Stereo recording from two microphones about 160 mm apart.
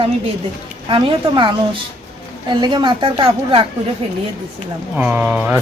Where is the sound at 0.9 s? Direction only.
35° right (ahead or behind).